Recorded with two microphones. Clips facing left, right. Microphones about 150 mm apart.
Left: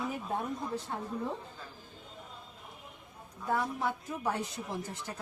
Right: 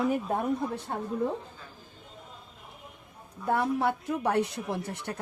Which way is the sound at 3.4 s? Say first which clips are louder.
Right 6 dB; 60° right (ahead or behind).